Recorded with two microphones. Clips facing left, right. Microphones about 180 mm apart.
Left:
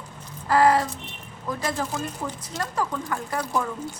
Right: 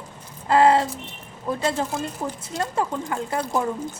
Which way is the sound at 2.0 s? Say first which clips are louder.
Right 2 dB; 10° right (ahead or behind).